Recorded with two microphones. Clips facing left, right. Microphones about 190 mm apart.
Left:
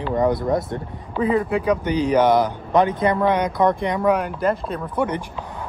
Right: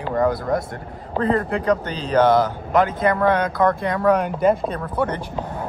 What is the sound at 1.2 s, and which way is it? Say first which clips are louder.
Speech: left 1 dB; 5° left (ahead or behind).